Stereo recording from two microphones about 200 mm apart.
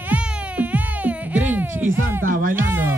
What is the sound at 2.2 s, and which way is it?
Music, 45° right (ahead or behind).